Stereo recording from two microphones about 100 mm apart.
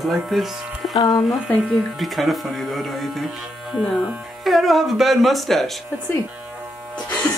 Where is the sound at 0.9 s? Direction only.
40° left (ahead or behind).